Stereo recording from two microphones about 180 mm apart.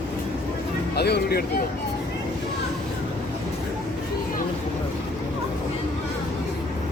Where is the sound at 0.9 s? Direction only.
60° left (ahead or behind).